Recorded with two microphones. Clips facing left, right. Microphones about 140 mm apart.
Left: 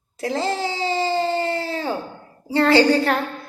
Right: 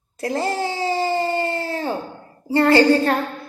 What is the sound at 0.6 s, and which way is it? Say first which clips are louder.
Baby cry: right 1 dB; 20° left (ahead or behind).